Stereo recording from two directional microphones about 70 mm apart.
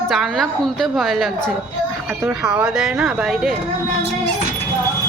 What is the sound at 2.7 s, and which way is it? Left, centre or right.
Speech, centre.